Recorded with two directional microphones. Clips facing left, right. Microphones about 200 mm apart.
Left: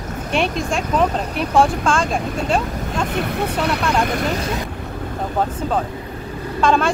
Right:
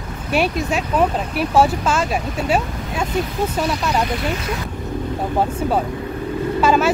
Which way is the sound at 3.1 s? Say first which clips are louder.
Right 3 dB; 65° left (ahead or behind).